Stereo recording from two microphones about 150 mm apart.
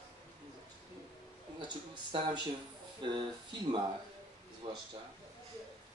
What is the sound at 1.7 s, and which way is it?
Speech, 30° right (ahead or behind).